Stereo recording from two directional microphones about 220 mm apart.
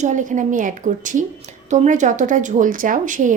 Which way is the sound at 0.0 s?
35° right (ahead or behind).